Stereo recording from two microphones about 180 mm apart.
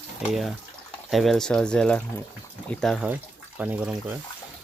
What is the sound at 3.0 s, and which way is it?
Speech, 10° right (ahead or behind).